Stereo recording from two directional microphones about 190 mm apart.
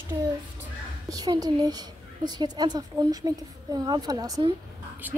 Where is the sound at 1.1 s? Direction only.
20° right (ahead or behind).